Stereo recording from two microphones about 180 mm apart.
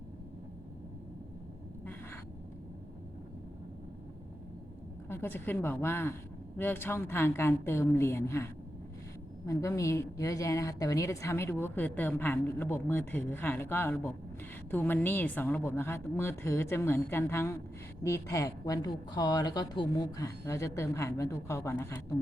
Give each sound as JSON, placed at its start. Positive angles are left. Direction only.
{"t": 5.0, "sound": "a woman's voice", "side_deg": 10}
{"t": 9.5, "sound": "a woman's voice", "side_deg": 15}